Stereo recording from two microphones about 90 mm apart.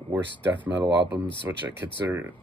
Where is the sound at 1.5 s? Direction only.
25° right (ahead or behind).